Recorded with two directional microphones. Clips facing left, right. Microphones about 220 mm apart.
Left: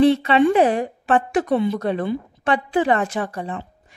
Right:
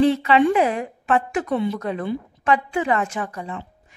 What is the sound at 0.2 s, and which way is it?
Speech, 35° left (ahead or behind).